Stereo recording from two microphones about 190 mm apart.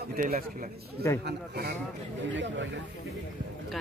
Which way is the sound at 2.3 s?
75° right (ahead or behind).